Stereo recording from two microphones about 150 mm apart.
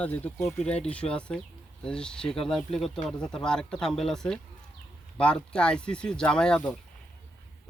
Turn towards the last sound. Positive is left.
turn(degrees=5)  # may be behind; listen again after turning